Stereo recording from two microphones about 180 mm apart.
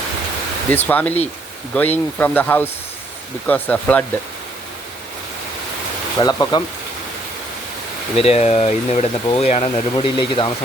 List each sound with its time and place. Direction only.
0.7 s speech: 10° left (ahead or behind)
6.1 s speech: 20° left (ahead or behind)
8.1 s speech: 35° left (ahead or behind)